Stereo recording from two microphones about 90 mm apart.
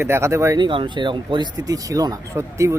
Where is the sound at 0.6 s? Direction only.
65° right (ahead or behind).